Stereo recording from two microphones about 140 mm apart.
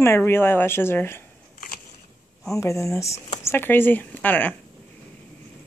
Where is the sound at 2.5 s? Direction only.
20° left (ahead or behind).